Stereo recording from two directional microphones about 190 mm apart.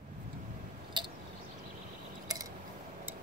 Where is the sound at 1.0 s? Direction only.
25° right (ahead or behind).